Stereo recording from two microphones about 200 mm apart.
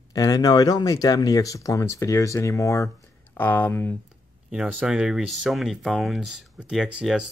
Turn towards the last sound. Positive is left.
turn(degrees=-5)  # may be behind; listen again after turning